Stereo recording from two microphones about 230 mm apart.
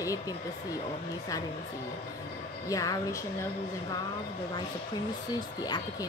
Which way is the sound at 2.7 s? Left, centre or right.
Centre.